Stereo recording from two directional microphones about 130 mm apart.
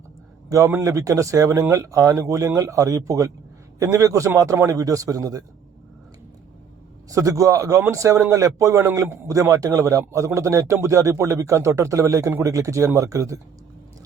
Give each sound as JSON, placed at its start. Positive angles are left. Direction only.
{"t": 0.5, "sound": "a man's voice", "side_deg": -25}
{"t": 7.1, "sound": "a man's voice", "side_deg": -25}